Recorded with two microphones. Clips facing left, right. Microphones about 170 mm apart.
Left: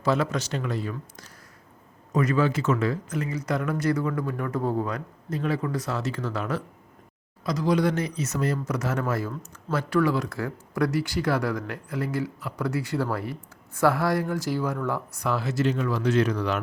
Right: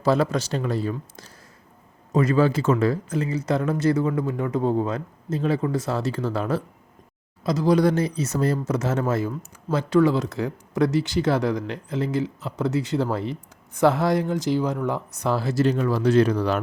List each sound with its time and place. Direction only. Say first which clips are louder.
0.0 s speech: right 4 dB; 35° right (ahead or behind)